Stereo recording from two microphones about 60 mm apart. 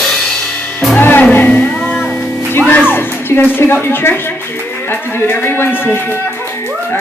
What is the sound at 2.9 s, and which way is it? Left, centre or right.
Music, left.